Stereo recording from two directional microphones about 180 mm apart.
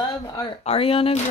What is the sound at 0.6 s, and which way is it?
Speech, 35° left (ahead or behind).